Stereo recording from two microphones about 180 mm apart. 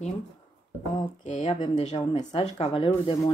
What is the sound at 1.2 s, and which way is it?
Speech, 40° left (ahead or behind).